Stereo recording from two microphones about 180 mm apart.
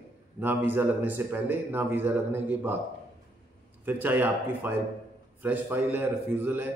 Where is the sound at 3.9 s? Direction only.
10° right (ahead or behind).